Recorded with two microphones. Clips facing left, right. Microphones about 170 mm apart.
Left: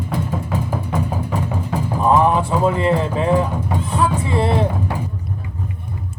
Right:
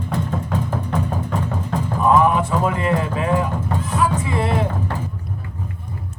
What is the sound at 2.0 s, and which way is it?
Music, 30° left (ahead or behind).